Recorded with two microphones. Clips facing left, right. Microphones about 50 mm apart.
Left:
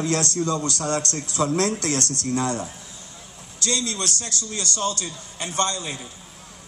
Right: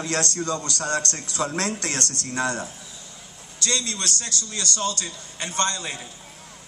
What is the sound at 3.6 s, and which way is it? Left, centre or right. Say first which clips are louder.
A man's voice: left 1 dB; right.